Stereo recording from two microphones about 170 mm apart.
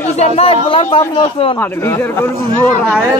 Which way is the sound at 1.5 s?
10° left (ahead or behind).